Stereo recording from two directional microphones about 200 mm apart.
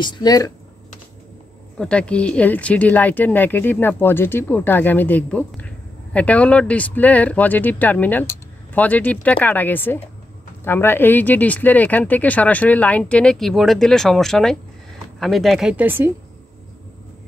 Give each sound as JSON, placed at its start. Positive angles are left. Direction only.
{"t": 0.0, "sound": "speech", "side_deg": 20}
{"t": 1.8, "sound": "speech", "side_deg": 5}